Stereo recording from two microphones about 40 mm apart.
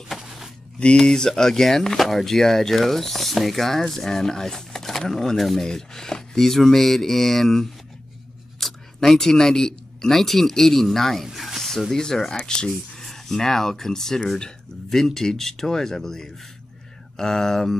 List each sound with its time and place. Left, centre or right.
0.7 s speech: left; by 11.2 s centre
11.3 s a sound: centre
11.9 s speech: centre
12.4 s speech: left
12.9 s speech: centre